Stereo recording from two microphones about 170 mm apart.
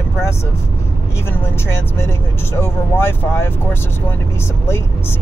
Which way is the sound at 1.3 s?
15° left (ahead or behind).